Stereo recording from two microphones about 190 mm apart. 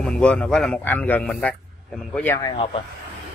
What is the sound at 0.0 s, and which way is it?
Speech, 5° left (ahead or behind).